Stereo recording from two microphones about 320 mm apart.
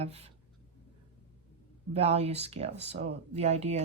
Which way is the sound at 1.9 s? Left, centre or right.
Centre.